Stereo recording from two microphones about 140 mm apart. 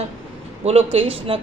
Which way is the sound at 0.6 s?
45° right (ahead or behind).